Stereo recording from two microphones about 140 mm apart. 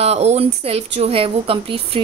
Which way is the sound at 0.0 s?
50° right (ahead or behind).